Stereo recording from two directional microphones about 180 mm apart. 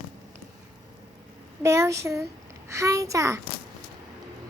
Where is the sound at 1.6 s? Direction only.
15° right (ahead or behind).